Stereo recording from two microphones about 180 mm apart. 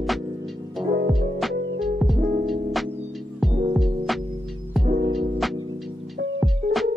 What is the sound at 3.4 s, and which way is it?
Music, centre (ahead or behind).